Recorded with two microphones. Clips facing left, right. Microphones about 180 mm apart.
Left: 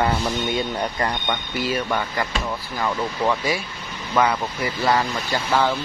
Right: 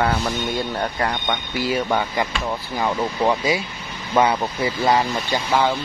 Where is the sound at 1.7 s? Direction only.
20° right (ahead or behind).